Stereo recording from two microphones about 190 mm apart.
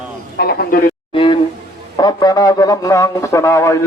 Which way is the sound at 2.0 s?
20° left (ahead or behind).